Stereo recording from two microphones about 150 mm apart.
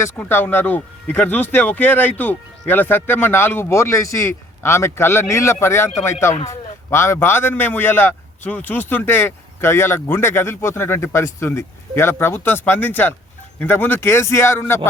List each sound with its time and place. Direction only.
0.2 s speech: 15° left (ahead or behind)